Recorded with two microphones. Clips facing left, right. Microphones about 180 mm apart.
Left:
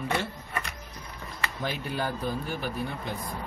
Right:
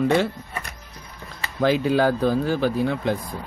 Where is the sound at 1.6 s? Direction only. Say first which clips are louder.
Right 14 dB; 90° right.